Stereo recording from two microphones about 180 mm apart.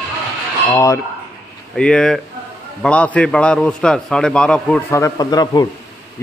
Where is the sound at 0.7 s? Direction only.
15° left (ahead or behind).